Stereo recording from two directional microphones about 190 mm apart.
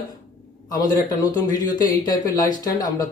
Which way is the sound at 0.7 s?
20° left (ahead or behind).